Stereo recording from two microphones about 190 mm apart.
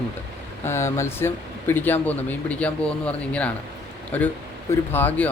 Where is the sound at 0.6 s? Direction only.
15° left (ahead or behind).